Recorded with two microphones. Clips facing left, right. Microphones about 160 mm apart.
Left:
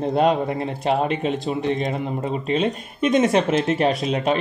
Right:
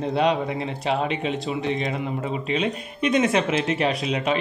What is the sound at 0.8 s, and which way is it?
Speech, 45° left (ahead or behind).